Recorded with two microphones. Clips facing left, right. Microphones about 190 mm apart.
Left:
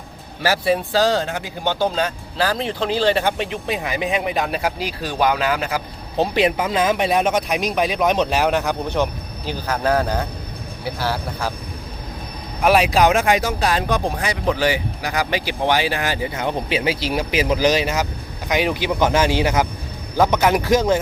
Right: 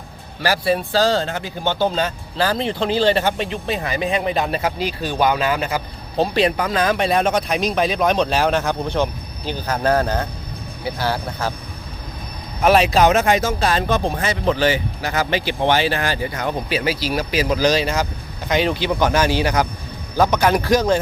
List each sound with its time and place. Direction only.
0.8 s speech: 15° left (ahead or behind)
4.2 s speech: 5° left (ahead or behind)
6.3 s speech: 15° left (ahead or behind)
12.6 s speech: 5° left (ahead or behind)
15.8 s speech: 15° left (ahead or behind)
16.6 s speech: 20° left (ahead or behind)